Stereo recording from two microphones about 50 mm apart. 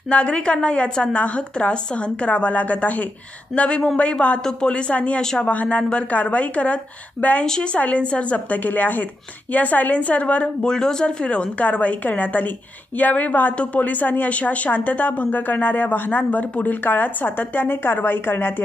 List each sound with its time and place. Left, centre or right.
0.1 s a woman's voice: left
7.4 s speech: centre
7.7 s a woman's voice: left
10.4 s a woman's voice: centre; by 18.5 s left